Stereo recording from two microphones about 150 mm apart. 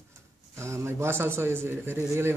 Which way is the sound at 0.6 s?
20° right (ahead or behind).